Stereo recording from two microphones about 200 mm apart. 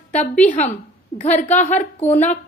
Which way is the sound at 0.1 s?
35° left (ahead or behind).